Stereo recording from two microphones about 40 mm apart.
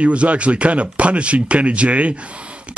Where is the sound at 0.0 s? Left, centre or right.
Right.